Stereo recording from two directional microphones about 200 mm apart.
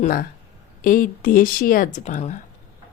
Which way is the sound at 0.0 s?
40° left (ahead or behind).